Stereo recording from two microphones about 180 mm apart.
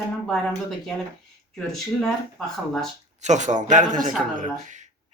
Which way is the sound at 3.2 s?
40° right (ahead or behind).